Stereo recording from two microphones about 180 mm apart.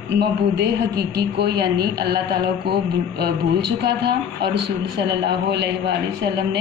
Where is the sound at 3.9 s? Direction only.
65° right (ahead or behind).